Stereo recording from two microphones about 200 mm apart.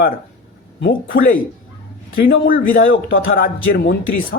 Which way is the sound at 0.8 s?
60° left (ahead or behind).